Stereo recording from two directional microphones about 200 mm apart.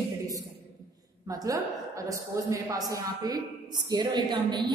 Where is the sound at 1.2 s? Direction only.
15° right (ahead or behind).